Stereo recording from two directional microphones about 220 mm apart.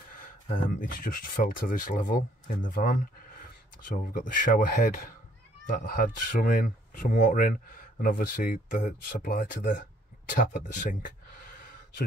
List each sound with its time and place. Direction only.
0.2 s speech: 40° left (ahead or behind)